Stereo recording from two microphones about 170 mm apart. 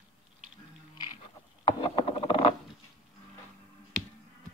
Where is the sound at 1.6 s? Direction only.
30° left (ahead or behind).